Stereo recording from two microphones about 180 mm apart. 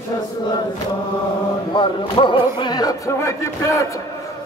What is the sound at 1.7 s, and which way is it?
Speech, 25° left (ahead or behind).